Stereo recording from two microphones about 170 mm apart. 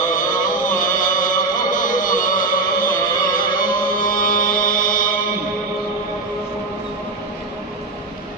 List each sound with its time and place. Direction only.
0.0 s music: 50° left (ahead or behind)